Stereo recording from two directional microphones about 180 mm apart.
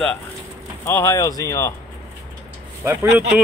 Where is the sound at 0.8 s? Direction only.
15° left (ahead or behind).